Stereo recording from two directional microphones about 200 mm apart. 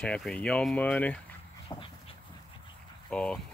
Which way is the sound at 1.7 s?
20° left (ahead or behind).